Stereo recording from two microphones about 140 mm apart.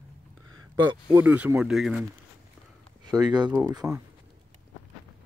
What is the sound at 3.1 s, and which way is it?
Speech, 30° right (ahead or behind).